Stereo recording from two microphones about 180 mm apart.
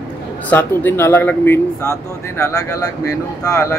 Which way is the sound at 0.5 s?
10° left (ahead or behind).